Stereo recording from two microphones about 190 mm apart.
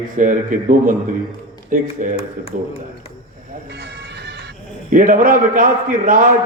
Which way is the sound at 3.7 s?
60° right (ahead or behind).